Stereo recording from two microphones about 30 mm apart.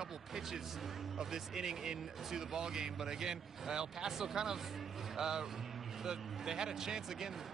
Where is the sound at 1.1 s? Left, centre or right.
Centre.